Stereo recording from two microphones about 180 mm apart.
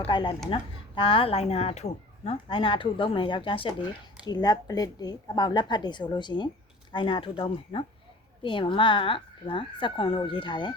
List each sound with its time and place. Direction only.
0.0 s speech: 30° left (ahead or behind)